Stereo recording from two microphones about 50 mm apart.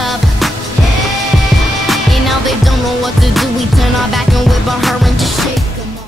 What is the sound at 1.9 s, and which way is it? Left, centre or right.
Music, centre.